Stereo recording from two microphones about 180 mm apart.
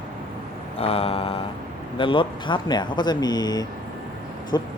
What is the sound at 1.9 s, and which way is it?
Speech, 30° left (ahead or behind).